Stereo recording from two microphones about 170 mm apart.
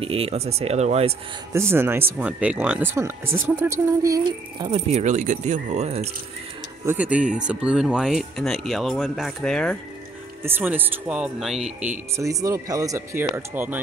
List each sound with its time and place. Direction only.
0.0 s speech: 35° right (ahead or behind)
1.5 s speech: 15° right (ahead or behind)
4.6 s speech: 40° right (ahead or behind)
6.9 s speech: 10° right (ahead or behind)
10.4 s speech: 10° right (ahead or behind)
12.2 s speech: 20° right (ahead or behind)